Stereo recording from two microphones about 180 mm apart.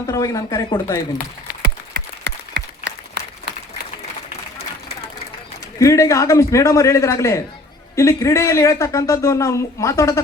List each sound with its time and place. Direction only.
0.1 s speech: 20° left (ahead or behind)
1.9 s applause: 65° right (ahead or behind)
5.8 s speech: 15° left (ahead or behind)